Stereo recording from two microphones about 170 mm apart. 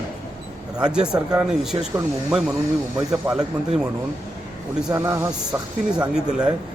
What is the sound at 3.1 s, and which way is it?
Speech, 5° right (ahead or behind).